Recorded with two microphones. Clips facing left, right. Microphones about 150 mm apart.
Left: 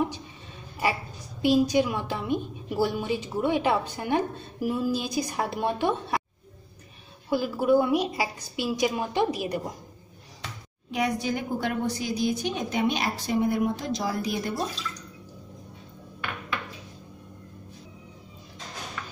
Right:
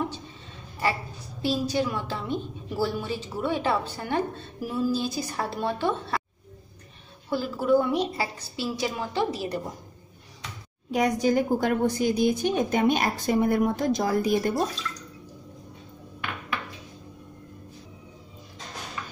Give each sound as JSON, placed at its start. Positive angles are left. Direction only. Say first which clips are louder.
{"t": 0.8, "sound": "a woman's voice", "louder": "even", "side_deg": 15}
{"t": 7.2, "sound": "a woman's voice", "louder": "left 1 dB", "side_deg": 10}
{"t": 10.9, "sound": "a woman's voice", "louder": "right 4 dB", "side_deg": -45}